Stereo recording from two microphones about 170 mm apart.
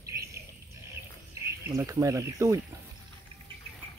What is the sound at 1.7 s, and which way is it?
Speech, 20° right (ahead or behind).